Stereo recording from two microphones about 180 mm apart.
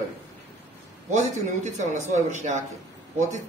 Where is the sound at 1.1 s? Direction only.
40° right (ahead or behind).